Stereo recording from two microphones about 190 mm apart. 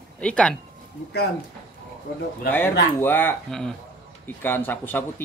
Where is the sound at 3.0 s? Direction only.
10° left (ahead or behind).